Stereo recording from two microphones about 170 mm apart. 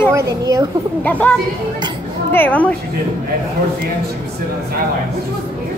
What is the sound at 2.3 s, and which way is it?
Speech, 10° left (ahead or behind).